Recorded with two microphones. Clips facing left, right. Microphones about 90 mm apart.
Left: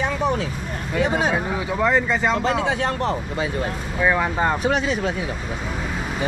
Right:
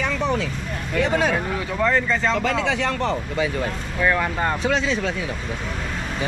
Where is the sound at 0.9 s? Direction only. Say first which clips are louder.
Even; 15° left (ahead or behind).